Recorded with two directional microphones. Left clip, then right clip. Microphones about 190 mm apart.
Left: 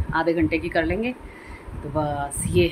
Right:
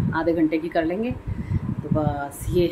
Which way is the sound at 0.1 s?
10° right (ahead or behind).